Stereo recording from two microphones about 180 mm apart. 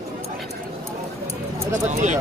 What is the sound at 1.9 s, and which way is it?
Speech, 40° right (ahead or behind).